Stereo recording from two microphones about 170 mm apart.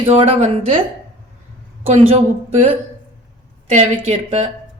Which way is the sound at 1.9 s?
40° right (ahead or behind).